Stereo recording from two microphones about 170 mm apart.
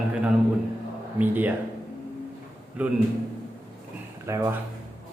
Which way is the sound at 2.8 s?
10° right (ahead or behind).